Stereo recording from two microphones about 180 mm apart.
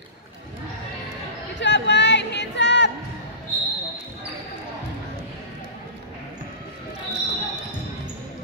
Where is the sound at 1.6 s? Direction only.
75° left (ahead or behind).